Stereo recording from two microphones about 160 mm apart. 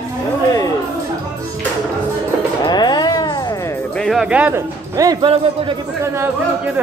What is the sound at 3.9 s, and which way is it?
Speech, centre (ahead or behind).